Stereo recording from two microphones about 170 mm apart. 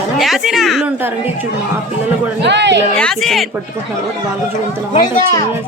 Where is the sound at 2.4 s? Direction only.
90° right.